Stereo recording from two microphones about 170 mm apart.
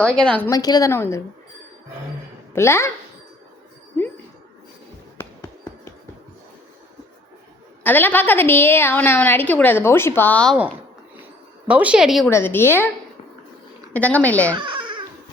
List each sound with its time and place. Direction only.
0.0 s speech: 5° left (ahead or behind)
0.5 s a woman's voice: 20° left (ahead or behind)
2.5 s a woman's voice: 15° left (ahead or behind)
5.1 s hands: 15° left (ahead or behind)
7.9 s a woman's voice: 10° left (ahead or behind)
11.7 s speech: 5° right (ahead or behind)
12.3 s a woman's voice: 15° left (ahead or behind)
13.9 s a woman's voice: 10° left (ahead or behind)
14.5 s babbling: 30° right (ahead or behind)